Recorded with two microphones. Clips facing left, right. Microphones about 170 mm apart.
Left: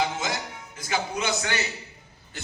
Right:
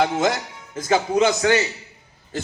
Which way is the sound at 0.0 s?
55° right (ahead or behind).